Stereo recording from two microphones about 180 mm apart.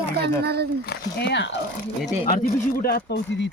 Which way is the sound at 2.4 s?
60° left (ahead or behind).